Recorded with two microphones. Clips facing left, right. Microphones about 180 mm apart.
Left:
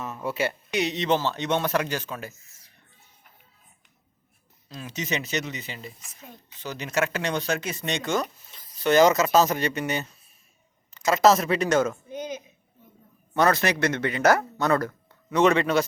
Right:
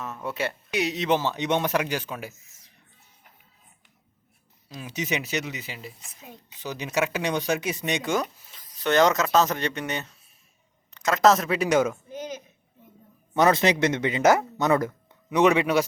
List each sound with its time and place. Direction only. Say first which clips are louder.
0.0 s speech: left 2 dB; centre (ahead or behind)
4.7 s speech: right 1 dB; 10° right (ahead or behind)
8.5 s speech: left 2 dB; centre (ahead or behind)
13.3 s speech: right 2 dB; 20° right (ahead or behind)